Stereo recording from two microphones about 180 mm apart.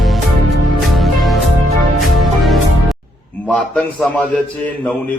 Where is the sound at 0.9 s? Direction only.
Centre (ahead or behind).